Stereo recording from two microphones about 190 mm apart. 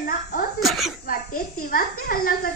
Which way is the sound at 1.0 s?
50° left (ahead or behind).